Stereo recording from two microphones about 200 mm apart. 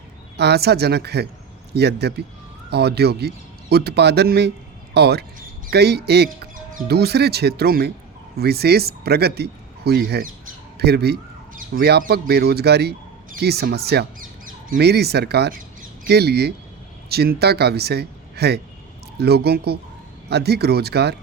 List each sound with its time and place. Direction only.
0.3 s a woman's voice: 55° right (ahead or behind)
10.8 s a sound: 55° right (ahead or behind)
11.8 s a woman's voice: 55° right (ahead or behind)